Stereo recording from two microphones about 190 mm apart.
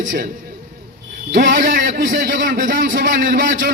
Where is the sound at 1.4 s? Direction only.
45° right (ahead or behind).